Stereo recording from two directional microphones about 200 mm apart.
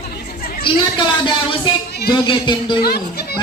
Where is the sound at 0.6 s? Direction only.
25° left (ahead or behind).